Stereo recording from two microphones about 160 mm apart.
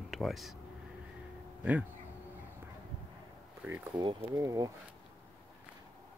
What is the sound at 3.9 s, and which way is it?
Speech, 25° right (ahead or behind).